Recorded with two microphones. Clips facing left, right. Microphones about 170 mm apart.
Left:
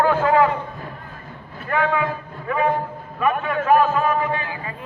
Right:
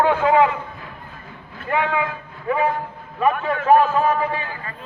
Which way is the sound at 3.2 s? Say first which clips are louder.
Right 1 dB; 30° right (ahead or behind).